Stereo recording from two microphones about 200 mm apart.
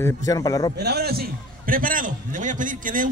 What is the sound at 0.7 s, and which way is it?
A man's voice, 55° right (ahead or behind).